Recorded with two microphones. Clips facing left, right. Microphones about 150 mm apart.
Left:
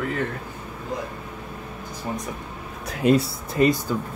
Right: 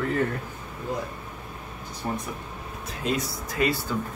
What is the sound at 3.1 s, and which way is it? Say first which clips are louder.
Speech: left 7 dB; 30° left (ahead or behind).